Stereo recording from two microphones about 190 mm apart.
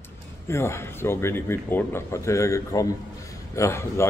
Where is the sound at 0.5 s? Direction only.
15° left (ahead or behind).